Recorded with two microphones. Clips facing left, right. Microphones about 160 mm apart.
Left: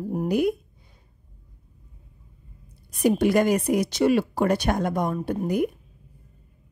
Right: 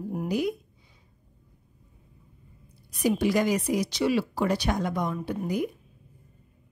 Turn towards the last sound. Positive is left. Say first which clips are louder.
# left 4 dB
turn(degrees=50)  # may be behind; listen again after turning